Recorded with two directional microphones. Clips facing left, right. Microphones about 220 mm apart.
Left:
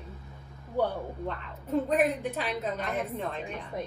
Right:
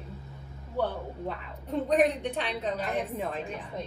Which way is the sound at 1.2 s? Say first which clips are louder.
Even; centre (ahead or behind).